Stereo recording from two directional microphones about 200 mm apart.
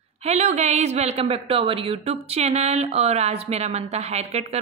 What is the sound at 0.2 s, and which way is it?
A woman's voice, 35° right (ahead or behind).